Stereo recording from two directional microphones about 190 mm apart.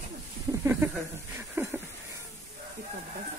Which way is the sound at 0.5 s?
15° right (ahead or behind).